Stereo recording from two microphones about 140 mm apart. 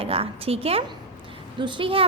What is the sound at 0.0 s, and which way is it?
A woman's voice, 45° right (ahead or behind).